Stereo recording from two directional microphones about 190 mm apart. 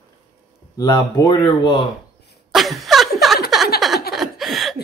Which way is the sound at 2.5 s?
Centre (ahead or behind).